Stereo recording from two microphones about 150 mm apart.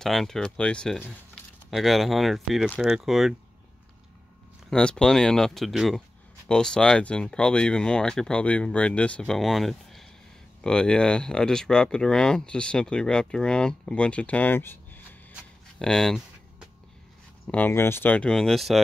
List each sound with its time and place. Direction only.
0.0 s speech: centre (ahead or behind)
4.6 s speech: 5° left (ahead or behind)
15.8 s a sound: 5° left (ahead or behind)
17.5 s speech: 15° left (ahead or behind)